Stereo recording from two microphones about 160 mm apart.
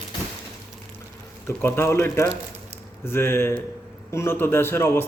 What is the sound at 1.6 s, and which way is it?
Speech, 15° left (ahead or behind).